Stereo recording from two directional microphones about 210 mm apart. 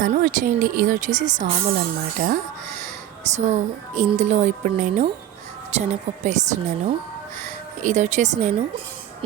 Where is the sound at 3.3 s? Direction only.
35° right (ahead or behind).